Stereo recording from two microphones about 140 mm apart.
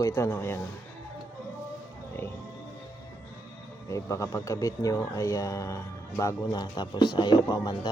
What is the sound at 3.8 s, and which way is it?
Speech, 20° left (ahead or behind).